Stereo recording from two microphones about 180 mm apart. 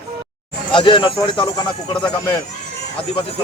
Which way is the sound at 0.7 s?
25° left (ahead or behind).